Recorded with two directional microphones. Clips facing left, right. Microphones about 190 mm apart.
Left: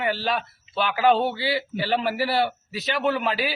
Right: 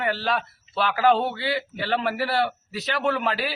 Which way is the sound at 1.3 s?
30° left (ahead or behind).